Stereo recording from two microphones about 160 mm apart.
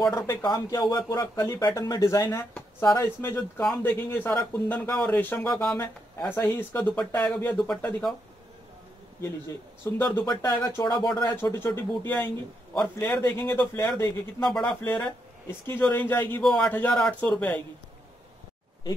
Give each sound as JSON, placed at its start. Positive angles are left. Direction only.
{"t": 0.1, "sound": "speech", "side_deg": 20}
{"t": 9.9, "sound": "speech", "side_deg": 15}